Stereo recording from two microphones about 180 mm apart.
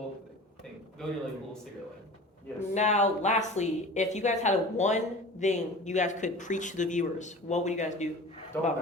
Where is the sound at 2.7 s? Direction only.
40° left (ahead or behind).